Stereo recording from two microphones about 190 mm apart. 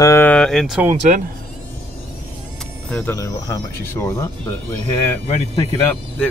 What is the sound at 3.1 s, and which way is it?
Speech, 15° left (ahead or behind).